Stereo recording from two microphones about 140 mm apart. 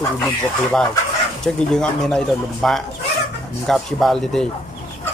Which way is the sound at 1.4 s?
5° left (ahead or behind).